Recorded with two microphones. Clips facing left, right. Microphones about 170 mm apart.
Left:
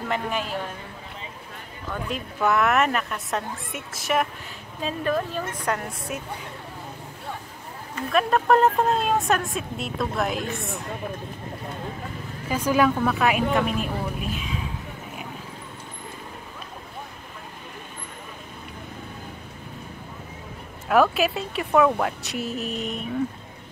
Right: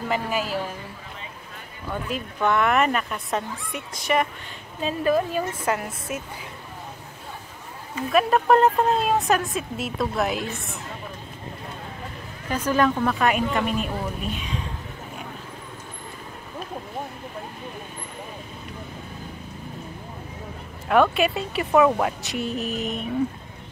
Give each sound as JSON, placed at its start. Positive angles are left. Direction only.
{"t": 0.1, "sound": "a woman's voice", "side_deg": -5}
{"t": 2.0, "sound": "a woman's voice", "side_deg": 0}
{"t": 7.9, "sound": "a woman's voice", "side_deg": -5}
{"t": 12.4, "sound": "a woman's voice", "side_deg": 10}
{"t": 20.9, "sound": "a woman's voice", "side_deg": 0}